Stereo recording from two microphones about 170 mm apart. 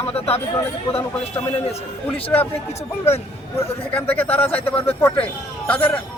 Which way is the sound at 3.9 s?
10° left (ahead or behind).